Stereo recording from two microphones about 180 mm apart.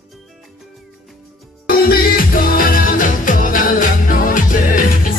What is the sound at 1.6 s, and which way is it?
Music, 55° left (ahead or behind).